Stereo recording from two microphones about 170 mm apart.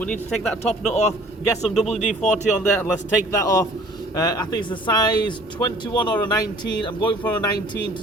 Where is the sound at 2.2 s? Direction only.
45° left (ahead or behind).